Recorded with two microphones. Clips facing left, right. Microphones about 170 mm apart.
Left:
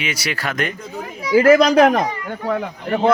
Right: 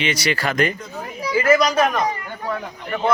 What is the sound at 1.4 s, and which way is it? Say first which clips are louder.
Speech: left 5 dB; 65° left (ahead or behind).